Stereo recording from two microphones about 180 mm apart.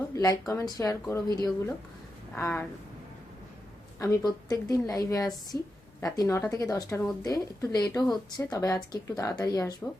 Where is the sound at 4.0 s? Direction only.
20° left (ahead or behind).